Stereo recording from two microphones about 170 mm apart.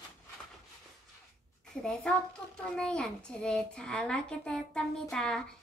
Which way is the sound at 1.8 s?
5° left (ahead or behind).